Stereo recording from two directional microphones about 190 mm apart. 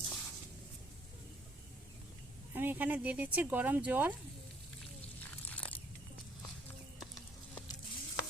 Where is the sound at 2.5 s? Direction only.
10° right (ahead or behind).